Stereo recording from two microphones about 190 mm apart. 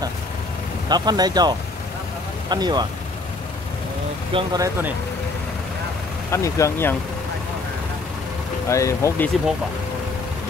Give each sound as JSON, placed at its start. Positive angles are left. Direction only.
{"t": 0.8, "sound": "speech", "side_deg": -20}
{"t": 2.5, "sound": "speech", "side_deg": -20}
{"t": 4.3, "sound": "speech", "side_deg": -25}
{"t": 6.3, "sound": "speech", "side_deg": 15}
{"t": 8.6, "sound": "speech", "side_deg": 15}